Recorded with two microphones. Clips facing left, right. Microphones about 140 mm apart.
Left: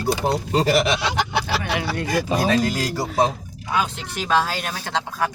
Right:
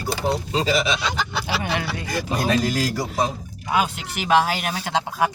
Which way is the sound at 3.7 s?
15° right (ahead or behind).